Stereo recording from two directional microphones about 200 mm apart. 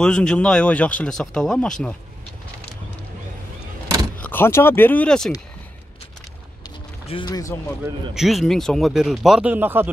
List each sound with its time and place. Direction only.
0.0 s speech: 5° left (ahead or behind)
4.2 s speech: 10° left (ahead or behind)
7.1 s speech: 25° left (ahead or behind)
8.1 s speech: centre (ahead or behind)